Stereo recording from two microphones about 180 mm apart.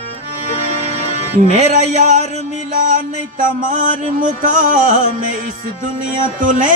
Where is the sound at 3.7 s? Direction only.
45° right (ahead or behind).